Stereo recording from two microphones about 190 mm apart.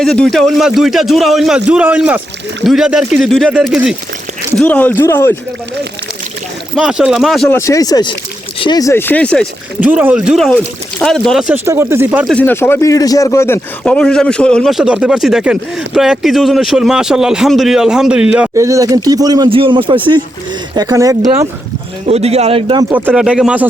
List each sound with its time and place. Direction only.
0.0 s speech: centre (ahead or behind)
6.7 s speech: 5° right (ahead or behind)
7.5 s speech: 15° left (ahead or behind)
9.8 s speech: 10° right (ahead or behind)
11.6 s speech: 15° right (ahead or behind)
12.3 s speech: 10° left (ahead or behind); by 21.3 s 20° right (ahead or behind)
22.0 s a man's voice: 35° right (ahead or behind)
22.9 s speech: 5° right (ahead or behind)